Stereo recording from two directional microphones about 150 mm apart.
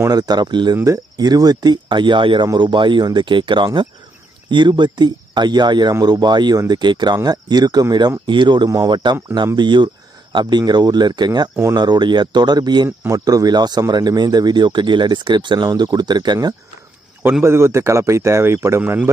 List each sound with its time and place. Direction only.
0.0 s speech: 25° right (ahead or behind)
17.2 s speech: 15° right (ahead or behind)